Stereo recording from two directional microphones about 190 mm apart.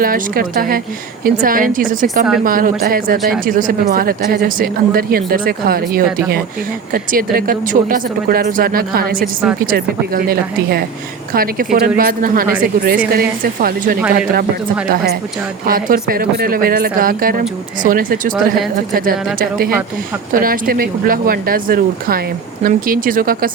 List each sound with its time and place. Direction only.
0.0 s speech: 50° right (ahead or behind)
15.6 s speech: 50° right (ahead or behind)